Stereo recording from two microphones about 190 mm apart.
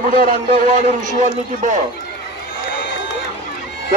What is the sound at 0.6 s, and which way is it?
A man's voice, 45° right (ahead or behind).